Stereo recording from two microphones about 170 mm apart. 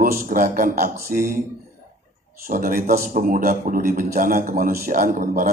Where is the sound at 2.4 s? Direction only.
55° right (ahead or behind).